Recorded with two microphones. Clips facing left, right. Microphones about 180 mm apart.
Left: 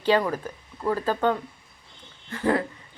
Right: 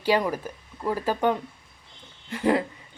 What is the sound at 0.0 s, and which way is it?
A woman's voice, 10° right (ahead or behind).